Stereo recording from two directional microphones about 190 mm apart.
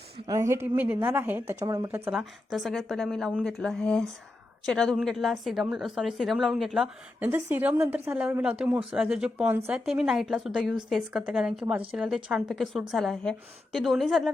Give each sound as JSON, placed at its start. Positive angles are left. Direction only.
{"t": 0.3, "sound": "a woman's voice", "side_deg": -15}
{"t": 2.0, "sound": "a woman's voice", "side_deg": 0}